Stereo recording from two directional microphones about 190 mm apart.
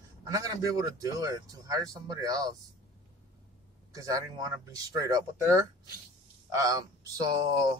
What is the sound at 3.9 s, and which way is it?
A man's voice, 20° right (ahead or behind).